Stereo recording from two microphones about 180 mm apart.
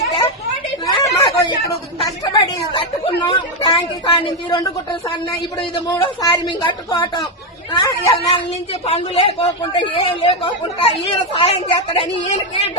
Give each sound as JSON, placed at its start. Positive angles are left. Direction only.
{"t": 0.9, "sound": "chatter", "side_deg": 20}
{"t": 2.7, "sound": "a sound", "side_deg": 25}
{"t": 5.5, "sound": "a woman's voice", "side_deg": 25}
{"t": 8.9, "sound": "a woman's voice", "side_deg": 35}